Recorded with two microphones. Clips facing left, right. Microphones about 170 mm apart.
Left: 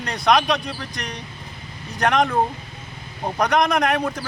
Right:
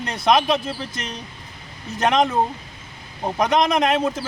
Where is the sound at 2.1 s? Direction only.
20° right (ahead or behind).